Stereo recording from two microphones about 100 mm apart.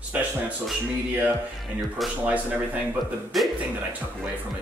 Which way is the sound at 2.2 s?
15° right (ahead or behind).